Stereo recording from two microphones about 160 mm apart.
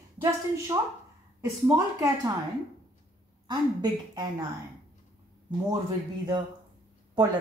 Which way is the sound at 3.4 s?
25° right (ahead or behind).